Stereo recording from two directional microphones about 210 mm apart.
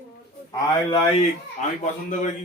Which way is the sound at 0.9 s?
25° left (ahead or behind).